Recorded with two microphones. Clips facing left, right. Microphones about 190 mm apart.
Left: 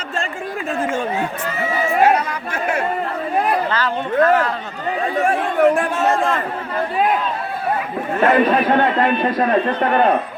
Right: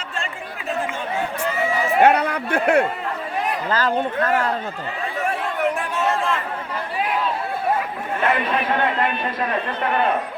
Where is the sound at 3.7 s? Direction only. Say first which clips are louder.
Right 1 dB; 45° right (ahead or behind).